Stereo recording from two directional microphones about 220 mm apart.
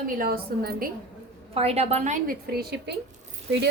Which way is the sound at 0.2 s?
45° right (ahead or behind).